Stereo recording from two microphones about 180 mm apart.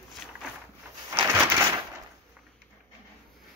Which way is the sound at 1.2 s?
15° right (ahead or behind).